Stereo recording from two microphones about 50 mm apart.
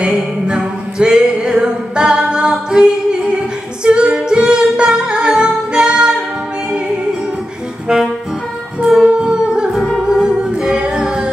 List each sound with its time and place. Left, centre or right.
0.0 s music: centre
7.9 s saxophone: centre
8.8 s music: centre